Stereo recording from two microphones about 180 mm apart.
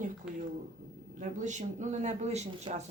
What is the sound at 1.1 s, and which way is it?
Speech, 40° right (ahead or behind).